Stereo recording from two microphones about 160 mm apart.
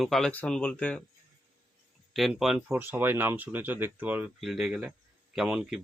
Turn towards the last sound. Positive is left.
turn(degrees=-5)  # may be behind; listen again after turning